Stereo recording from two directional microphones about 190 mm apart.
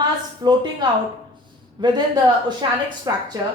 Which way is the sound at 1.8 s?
25° right (ahead or behind).